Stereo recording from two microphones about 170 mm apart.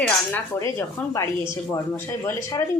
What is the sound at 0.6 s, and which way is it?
A woman's voice, 20° left (ahead or behind).